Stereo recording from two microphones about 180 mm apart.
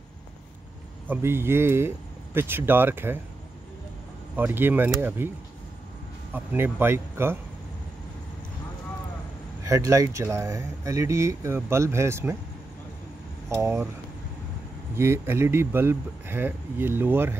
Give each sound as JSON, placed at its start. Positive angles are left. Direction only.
{"t": 1.0, "sound": "speech", "side_deg": -10}
{"t": 4.4, "sound": "speech", "side_deg": -10}
{"t": 6.3, "sound": "speech", "side_deg": -10}
{"t": 9.7, "sound": "speech", "side_deg": -15}
{"t": 13.5, "sound": "speech", "side_deg": -15}
{"t": 15.0, "sound": "speech", "side_deg": -15}